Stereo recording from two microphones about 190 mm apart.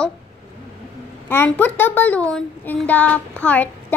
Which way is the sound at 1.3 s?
10° left (ahead or behind).